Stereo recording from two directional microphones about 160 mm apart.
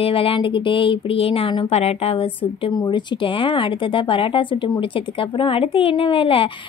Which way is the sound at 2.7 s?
25° left (ahead or behind).